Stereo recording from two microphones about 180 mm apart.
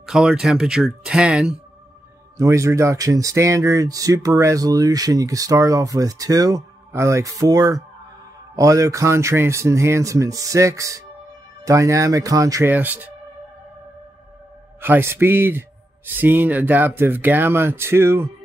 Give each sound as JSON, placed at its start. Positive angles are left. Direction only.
{"t": 0.0, "sound": "speech", "side_deg": -5}
{"t": 2.3, "sound": "speech", "side_deg": -15}
{"t": 14.8, "sound": "speech", "side_deg": -10}